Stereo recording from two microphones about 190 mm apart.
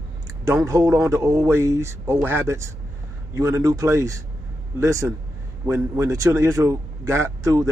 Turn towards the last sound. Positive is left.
turn(degrees=-15)  # may be behind; listen again after turning